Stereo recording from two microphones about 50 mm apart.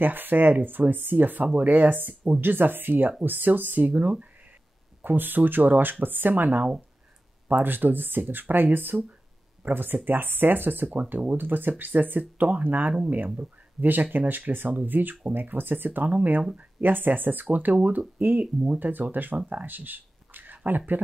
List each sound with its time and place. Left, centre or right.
0.0 s speech: right
18.8 s speech: right